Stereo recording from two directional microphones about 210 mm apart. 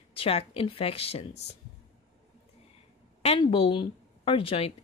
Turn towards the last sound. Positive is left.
turn(degrees=25)  # may be behind; listen again after turning